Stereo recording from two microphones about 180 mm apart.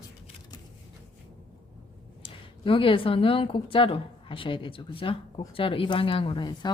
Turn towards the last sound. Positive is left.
turn(degrees=25)  # may be behind; listen again after turning